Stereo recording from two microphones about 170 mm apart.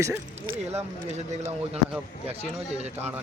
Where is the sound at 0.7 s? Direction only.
40° right (ahead or behind).